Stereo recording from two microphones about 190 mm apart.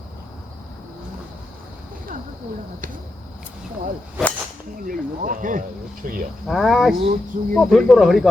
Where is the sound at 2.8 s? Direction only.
45° right (ahead or behind).